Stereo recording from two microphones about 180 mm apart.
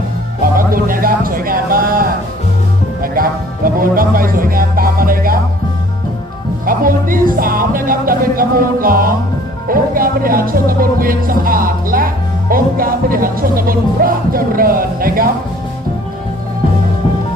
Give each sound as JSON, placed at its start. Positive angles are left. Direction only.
{"t": 0.5, "sound": "music", "side_deg": -50}
{"t": 6.7, "sound": "music", "side_deg": -50}